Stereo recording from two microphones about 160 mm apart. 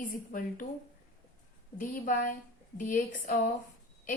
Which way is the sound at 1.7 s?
60° left (ahead or behind).